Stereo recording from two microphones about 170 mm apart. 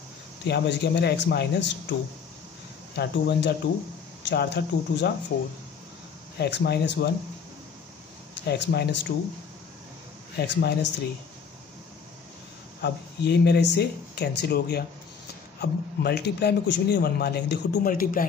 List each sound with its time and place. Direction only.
0.5 s speech: 90° left
3.0 s a man's voice: 85° left
6.3 s a man's voice: 75° left (ahead or behind)
8.5 s a man's voice: 85° left
10.3 s a man's voice: 75° left (ahead or behind)
12.8 s a man's voice: 75° left (ahead or behind); by 18.2 s 55° left (ahead or behind)